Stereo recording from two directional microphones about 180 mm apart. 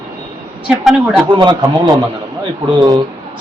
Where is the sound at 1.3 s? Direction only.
25° right (ahead or behind).